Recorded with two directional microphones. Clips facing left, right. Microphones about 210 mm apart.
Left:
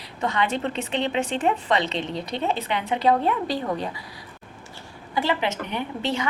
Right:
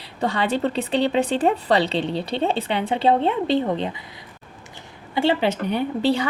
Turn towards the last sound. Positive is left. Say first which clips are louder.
# right 6 dB
turn(degrees=-35)  # may be behind; listen again after turning